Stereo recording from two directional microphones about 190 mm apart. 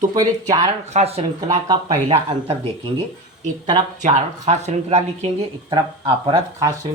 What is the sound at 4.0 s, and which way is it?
Speech, 40° right (ahead or behind).